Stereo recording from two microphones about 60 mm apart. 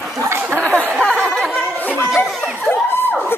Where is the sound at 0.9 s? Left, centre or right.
Centre.